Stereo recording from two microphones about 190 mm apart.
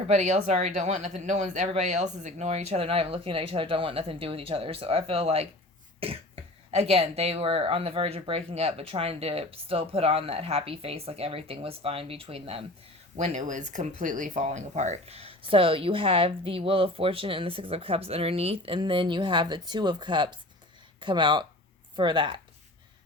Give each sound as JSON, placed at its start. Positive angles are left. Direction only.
{"t": 0.1, "sound": "speech", "side_deg": -40}